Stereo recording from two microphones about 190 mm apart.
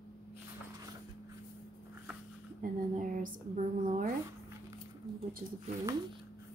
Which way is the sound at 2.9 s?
45° right (ahead or behind).